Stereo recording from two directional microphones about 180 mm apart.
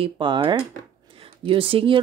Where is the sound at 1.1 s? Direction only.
30° right (ahead or behind).